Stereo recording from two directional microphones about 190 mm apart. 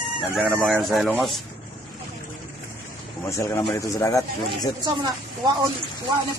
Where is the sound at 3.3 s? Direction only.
15° left (ahead or behind).